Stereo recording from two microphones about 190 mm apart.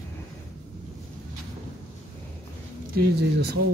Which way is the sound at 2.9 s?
60° right (ahead or behind).